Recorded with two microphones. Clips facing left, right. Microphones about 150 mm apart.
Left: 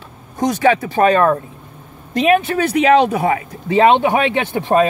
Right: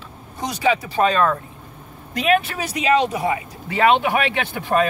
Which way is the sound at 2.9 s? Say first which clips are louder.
Left 3 dB; 60° left (ahead or behind).